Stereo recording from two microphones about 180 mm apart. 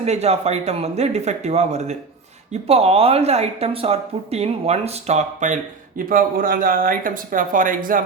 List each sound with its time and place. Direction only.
0.0 s speech: 35° right (ahead or behind)
6.0 s speech: 50° right (ahead or behind)